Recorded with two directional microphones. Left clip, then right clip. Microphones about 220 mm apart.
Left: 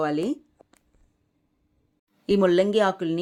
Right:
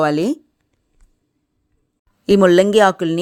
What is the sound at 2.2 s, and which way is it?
Speech, 40° right (ahead or behind).